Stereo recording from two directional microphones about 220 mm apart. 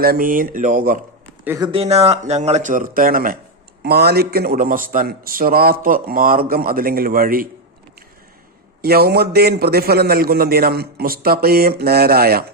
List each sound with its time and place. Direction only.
0.0 s a man's voice: 40° right (ahead or behind)
1.5 s a man's voice: 15° right (ahead or behind); by 7.4 s 40° right (ahead or behind)
8.8 s a man's voice: 45° right (ahead or behind)